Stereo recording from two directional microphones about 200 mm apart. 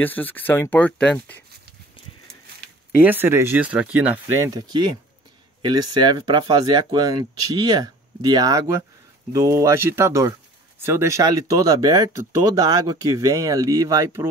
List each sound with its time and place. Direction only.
0.0 s speech: 10° left (ahead or behind)
3.0 s speech: 10° right (ahead or behind)